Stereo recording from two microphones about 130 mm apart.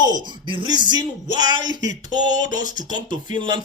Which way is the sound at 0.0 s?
35° right (ahead or behind).